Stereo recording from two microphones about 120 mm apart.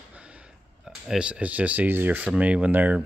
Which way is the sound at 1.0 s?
5° right (ahead or behind).